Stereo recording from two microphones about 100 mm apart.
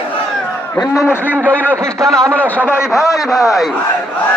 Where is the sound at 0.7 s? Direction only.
30° left (ahead or behind).